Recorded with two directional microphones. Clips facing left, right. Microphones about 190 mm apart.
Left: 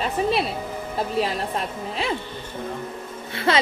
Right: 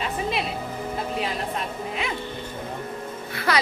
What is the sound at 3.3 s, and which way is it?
Music, 25° left (ahead or behind).